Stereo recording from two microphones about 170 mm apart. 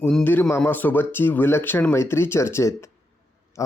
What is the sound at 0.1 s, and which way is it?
Speech, 5° left (ahead or behind).